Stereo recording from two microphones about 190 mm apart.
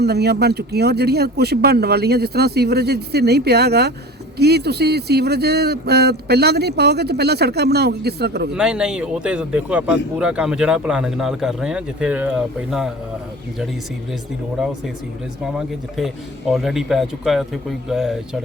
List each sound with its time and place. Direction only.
0.0 s speech: 60° right (ahead or behind)
8.5 s speech: 5° right (ahead or behind)
15.4 s speech: centre (ahead or behind)